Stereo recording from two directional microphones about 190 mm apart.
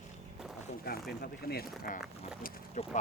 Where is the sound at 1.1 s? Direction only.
55° left (ahead or behind).